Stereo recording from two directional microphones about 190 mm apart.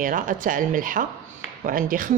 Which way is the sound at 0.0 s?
45° right (ahead or behind).